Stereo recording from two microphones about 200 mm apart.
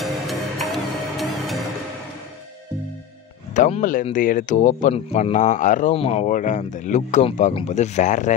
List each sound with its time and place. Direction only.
0.0 s music: centre (ahead or behind)
3.5 s speech: 40° left (ahead or behind)